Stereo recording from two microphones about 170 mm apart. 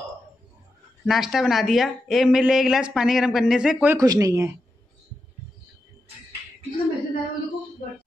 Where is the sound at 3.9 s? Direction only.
20° right (ahead or behind).